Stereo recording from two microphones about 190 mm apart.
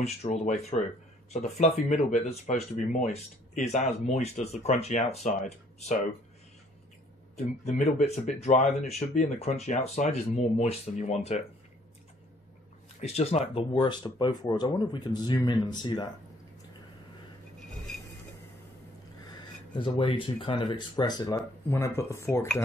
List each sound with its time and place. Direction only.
0.0 s speech: 35° left (ahead or behind)
7.3 s speech: 35° left (ahead or behind)
13.0 s speech: 35° left (ahead or behind)
13.7 s speech: 25° left (ahead or behind)
19.2 s speech: 20° left (ahead or behind)